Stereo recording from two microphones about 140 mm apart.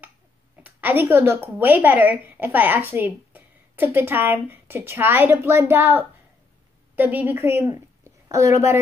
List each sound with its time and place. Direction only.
0.7 s a woman's voice: 10° right (ahead or behind)